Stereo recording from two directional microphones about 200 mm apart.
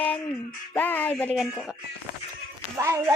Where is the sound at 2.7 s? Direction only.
15° right (ahead or behind).